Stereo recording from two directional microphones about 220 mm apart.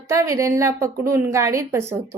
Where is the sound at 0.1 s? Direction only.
15° right (ahead or behind).